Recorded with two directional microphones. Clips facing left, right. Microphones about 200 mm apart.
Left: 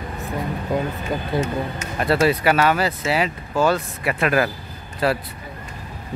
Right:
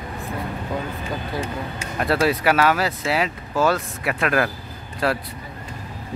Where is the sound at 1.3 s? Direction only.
25° left (ahead or behind).